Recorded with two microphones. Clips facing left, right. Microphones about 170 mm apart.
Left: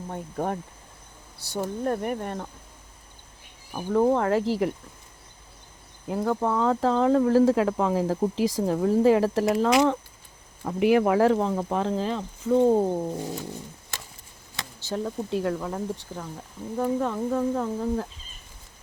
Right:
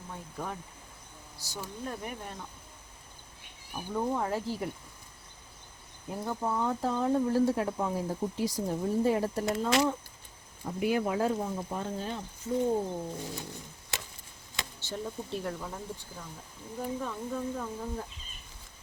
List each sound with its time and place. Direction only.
0.1 s speech: 55° left (ahead or behind)
3.7 s speech: 85° left
6.1 s speech: 90° left
14.9 s speech: 75° left (ahead or behind)